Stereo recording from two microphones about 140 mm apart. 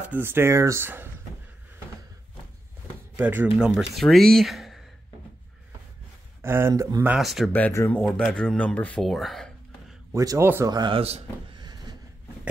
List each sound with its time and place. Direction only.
0.1 s speech: 15° right (ahead or behind)
3.2 s speech: 15° right (ahead or behind)
3.5 s speech: 5° right (ahead or behind)
6.4 s speech: 20° right (ahead or behind)
7.2 s speech: centre (ahead or behind)
10.1 s speech: 25° right (ahead or behind)
10.7 s a man's voice: 30° right (ahead or behind)
11.0 s a man's voice: 45° right (ahead or behind)
11.6 s vehicle: 30° right (ahead or behind)